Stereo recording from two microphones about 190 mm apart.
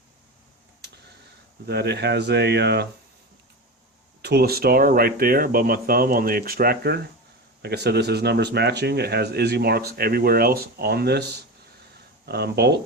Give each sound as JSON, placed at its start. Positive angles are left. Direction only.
{"t": 0.8, "sound": "a sound", "side_deg": -60}
{"t": 1.6, "sound": "speech", "side_deg": -60}
{"t": 4.2, "sound": "speech", "side_deg": -55}